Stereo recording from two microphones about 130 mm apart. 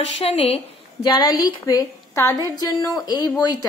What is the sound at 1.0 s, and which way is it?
A woman's voice, 30° left (ahead or behind).